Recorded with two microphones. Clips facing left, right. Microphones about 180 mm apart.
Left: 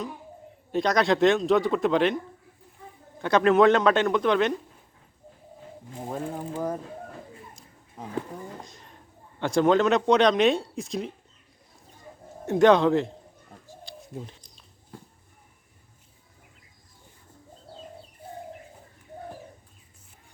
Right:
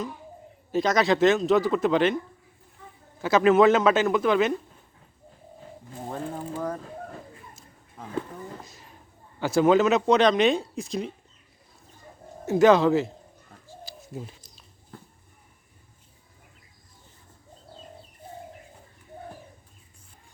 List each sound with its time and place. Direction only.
0.7 s speech: centre (ahead or behind)
3.2 s speech: 5° right (ahead or behind)
6.1 s pulleys: 15° left (ahead or behind)
8.0 s speech: 20° left (ahead or behind)
8.6 s a sound: 5° right (ahead or behind)
9.4 s speech: 5° right (ahead or behind)
12.5 s speech: 5° right (ahead or behind)
13.8 s bird: 5° right (ahead or behind)